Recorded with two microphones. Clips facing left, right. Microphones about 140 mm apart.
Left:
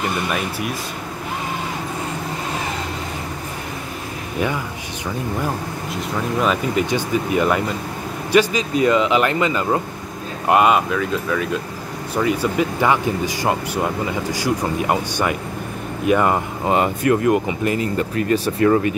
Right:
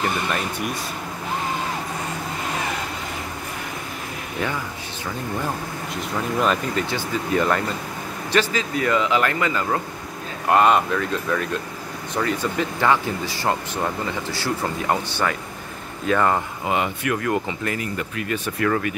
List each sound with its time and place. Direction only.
5.9 s speech: 5° left (ahead or behind); by 9.8 s 20° left (ahead or behind)
10.5 s speech: 5° left (ahead or behind)
16.6 s speech: 35° left (ahead or behind)
17.2 s speech: 20° left (ahead or behind)
17.9 s speech: 35° left (ahead or behind)